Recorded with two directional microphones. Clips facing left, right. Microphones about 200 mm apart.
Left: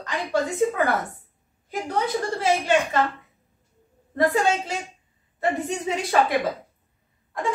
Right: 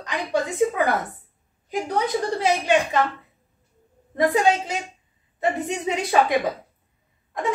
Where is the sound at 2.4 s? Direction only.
15° right (ahead or behind).